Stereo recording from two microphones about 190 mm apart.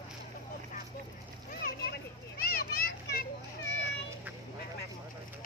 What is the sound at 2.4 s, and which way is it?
Children playing, 50° left (ahead or behind).